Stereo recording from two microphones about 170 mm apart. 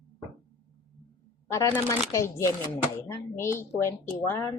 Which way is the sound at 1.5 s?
20° left (ahead or behind).